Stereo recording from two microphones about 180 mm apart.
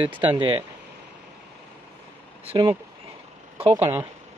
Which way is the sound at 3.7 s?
10° right (ahead or behind).